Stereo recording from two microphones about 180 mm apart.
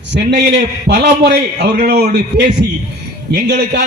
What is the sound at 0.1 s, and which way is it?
A man's voice, 75° right (ahead or behind).